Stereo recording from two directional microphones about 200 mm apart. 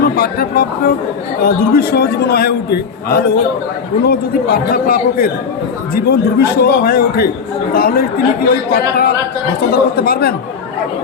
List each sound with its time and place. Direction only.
0.2 s a man's voice: 50° left (ahead or behind)